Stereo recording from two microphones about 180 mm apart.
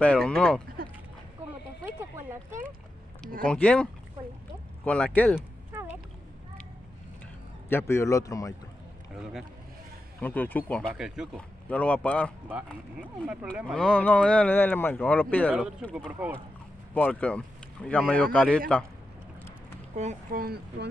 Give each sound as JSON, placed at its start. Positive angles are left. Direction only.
{"t": 0.0, "sound": "speech", "side_deg": 5}
{"t": 3.4, "sound": "speech", "side_deg": 5}
{"t": 7.7, "sound": "speech", "side_deg": 15}
{"t": 10.2, "sound": "speech", "side_deg": 10}
{"t": 11.7, "sound": "speech", "side_deg": 5}
{"t": 13.0, "sound": "speech", "side_deg": -5}
{"t": 13.7, "sound": "speech", "side_deg": 5}
{"t": 15.9, "sound": "speech", "side_deg": -5}
{"t": 16.9, "sound": "speech", "side_deg": 10}
{"t": 20.0, "sound": "speech", "side_deg": -45}